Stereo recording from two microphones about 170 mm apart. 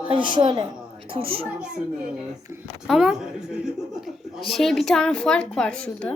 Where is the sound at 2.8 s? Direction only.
Centre (ahead or behind).